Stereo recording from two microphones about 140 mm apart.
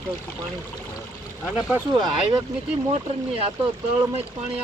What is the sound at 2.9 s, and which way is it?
Speech, 45° right (ahead or behind).